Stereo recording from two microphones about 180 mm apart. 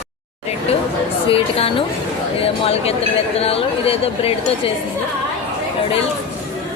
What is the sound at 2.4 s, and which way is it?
Chatter, 35° left (ahead or behind).